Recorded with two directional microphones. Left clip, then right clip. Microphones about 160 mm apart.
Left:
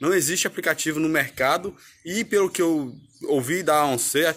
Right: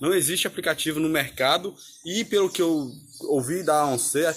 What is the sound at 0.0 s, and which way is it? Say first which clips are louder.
Speech: left 1 dB; 20° left (ahead or behind).